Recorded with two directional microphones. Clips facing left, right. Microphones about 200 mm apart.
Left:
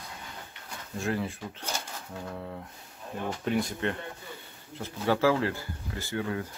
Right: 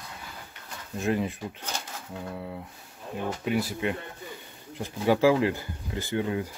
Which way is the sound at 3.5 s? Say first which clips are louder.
Right 1 dB; 5° right (ahead or behind).